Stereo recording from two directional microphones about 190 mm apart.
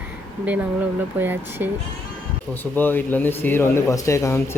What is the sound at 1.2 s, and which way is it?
Speech, 10° right (ahead or behind).